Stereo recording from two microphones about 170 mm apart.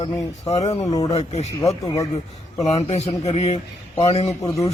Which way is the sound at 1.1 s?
40° left (ahead or behind).